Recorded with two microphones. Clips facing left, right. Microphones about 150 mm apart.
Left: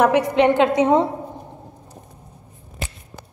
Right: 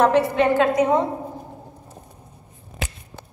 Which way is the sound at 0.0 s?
15° left (ahead or behind).